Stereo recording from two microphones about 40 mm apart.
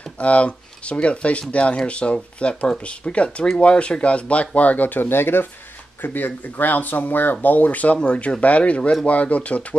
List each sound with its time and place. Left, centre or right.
0.2 s speech: left
6.0 s speech: left
8.0 s speech: left